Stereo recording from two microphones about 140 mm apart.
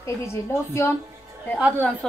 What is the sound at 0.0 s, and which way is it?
Speech, 20° left (ahead or behind).